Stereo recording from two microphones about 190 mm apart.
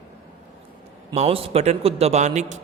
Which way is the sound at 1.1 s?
30° right (ahead or behind).